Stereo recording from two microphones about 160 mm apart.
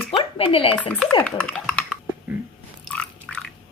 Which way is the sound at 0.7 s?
5° left (ahead or behind).